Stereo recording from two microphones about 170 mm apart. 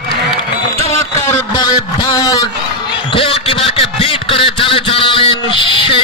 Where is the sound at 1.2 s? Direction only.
20° left (ahead or behind).